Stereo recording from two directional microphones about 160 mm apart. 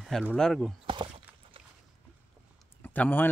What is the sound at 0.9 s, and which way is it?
Speech, 30° right (ahead or behind).